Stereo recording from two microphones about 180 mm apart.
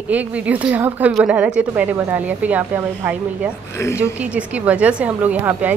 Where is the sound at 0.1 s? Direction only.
10° right (ahead or behind).